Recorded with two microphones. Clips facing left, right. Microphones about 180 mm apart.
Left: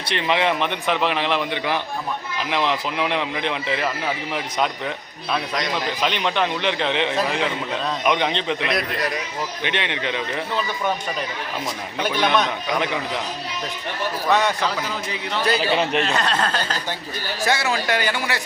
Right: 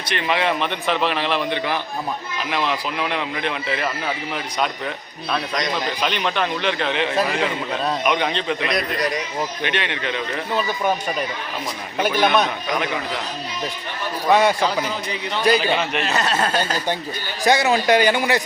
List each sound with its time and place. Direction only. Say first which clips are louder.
0.1 s a man's voice: even; 25° left (ahead or behind)
5.3 s a man's voice: right 1 dB; 5° left (ahead or behind)
6.1 s a man's voice: left 1 dB; 20° left (ahead or behind)
8.6 s a man's voice: right 1 dB; 5° left (ahead or behind)
9.6 s a man's voice: right 1 dB; 20° left (ahead or behind)
11.9 s a man's voice: right 3 dB; 5° right (ahead or behind)
14.3 s a man's voice: right 4 dB; 10° right (ahead or behind)